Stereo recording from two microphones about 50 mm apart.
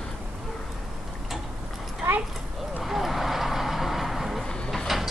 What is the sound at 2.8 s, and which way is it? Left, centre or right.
Vehicle, centre.